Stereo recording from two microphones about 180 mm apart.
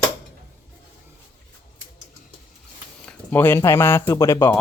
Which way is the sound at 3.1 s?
10° left (ahead or behind).